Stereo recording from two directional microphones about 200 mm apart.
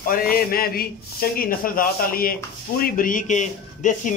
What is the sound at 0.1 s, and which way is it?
A man's voice, 45° left (ahead or behind).